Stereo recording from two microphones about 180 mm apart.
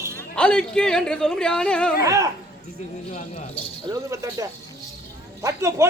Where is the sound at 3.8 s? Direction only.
20° right (ahead or behind).